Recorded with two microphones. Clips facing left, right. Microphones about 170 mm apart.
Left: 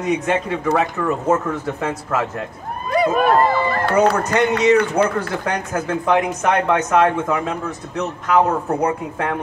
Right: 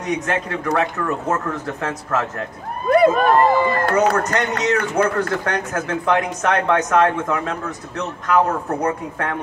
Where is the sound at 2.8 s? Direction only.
55° right (ahead or behind).